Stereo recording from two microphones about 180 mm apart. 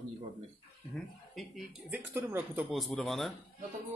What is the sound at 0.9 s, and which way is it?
Speech, centre (ahead or behind).